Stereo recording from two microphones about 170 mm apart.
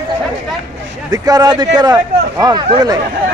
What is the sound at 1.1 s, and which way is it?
Speech, 20° right (ahead or behind).